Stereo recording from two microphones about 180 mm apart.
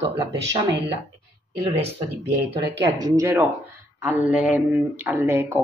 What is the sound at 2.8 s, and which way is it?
Speech, 20° right (ahead or behind).